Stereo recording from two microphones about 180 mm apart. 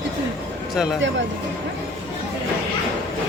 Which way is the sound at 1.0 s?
90° right.